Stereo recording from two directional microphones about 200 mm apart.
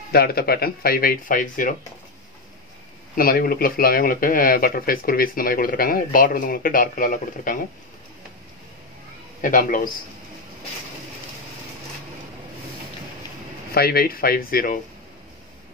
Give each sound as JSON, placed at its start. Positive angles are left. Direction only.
{"t": 0.1, "sound": "speech", "side_deg": 50}
{"t": 3.2, "sound": "speech", "side_deg": 45}
{"t": 9.4, "sound": "speech", "side_deg": 40}
{"t": 13.7, "sound": "speech", "side_deg": 50}